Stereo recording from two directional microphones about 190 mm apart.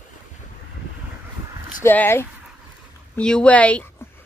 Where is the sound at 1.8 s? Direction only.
10° left (ahead or behind).